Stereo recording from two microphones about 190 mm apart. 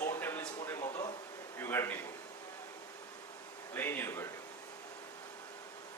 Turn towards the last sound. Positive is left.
turn(degrees=10)  # may be behind; listen again after turning